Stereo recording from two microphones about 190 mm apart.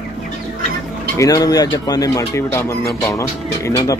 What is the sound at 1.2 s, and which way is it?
Speech, 20° left (ahead or behind).